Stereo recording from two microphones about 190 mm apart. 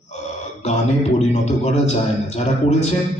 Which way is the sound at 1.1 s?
35° left (ahead or behind).